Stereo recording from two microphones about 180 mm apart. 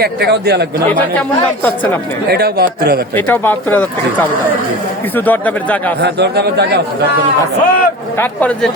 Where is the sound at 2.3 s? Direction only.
60° right (ahead or behind).